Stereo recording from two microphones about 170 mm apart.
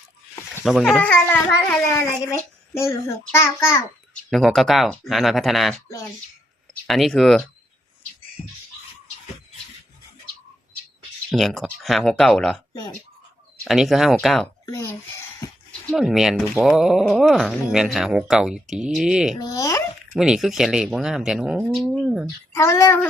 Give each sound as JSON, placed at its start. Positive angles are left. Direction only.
{"t": 0.6, "sound": "a child's voice", "side_deg": 0}
{"t": 4.3, "sound": "speech", "side_deg": 0}
{"t": 6.8, "sound": "speech", "side_deg": 0}
{"t": 8.4, "sound": "bird", "side_deg": 50}
{"t": 11.3, "sound": "speech", "side_deg": 0}
{"t": 13.7, "sound": "speech", "side_deg": 0}
{"t": 14.7, "sound": "a child's voice", "side_deg": 15}
{"t": 15.4, "sound": "a sound", "side_deg": 20}
{"t": 15.9, "sound": "speech", "side_deg": -5}
{"t": 19.4, "sound": "speech", "side_deg": 20}
{"t": 20.1, "sound": "speech", "side_deg": -5}
{"t": 22.5, "sound": "a child's voice", "side_deg": 15}